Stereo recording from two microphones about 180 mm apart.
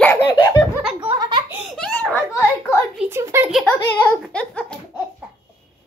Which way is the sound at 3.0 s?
15° right (ahead or behind).